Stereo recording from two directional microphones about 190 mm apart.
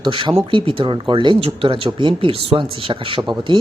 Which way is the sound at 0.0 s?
25° right (ahead or behind).